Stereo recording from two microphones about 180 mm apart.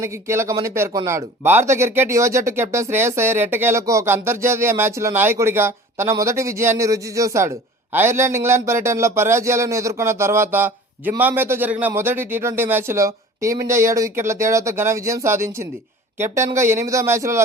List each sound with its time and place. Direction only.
0.0 s speech: 15° right (ahead or behind)